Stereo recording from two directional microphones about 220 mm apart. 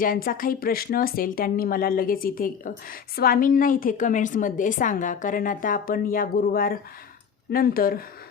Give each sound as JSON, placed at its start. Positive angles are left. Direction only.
{"t": 0.0, "sound": "a woman's voice", "side_deg": 40}